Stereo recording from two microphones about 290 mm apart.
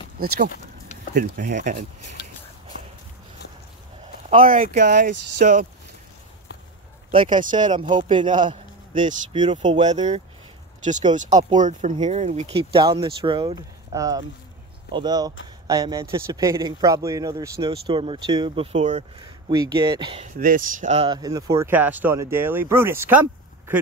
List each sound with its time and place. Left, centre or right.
1.1 s speech: right
4.3 s speech: right
7.1 s a man's voice: right